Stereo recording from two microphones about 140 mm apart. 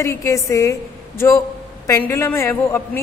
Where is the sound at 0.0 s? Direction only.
20° left (ahead or behind).